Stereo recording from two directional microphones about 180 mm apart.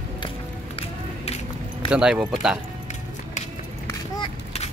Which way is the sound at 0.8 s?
35° left (ahead or behind).